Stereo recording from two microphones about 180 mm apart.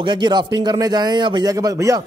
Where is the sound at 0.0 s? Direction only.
25° right (ahead or behind).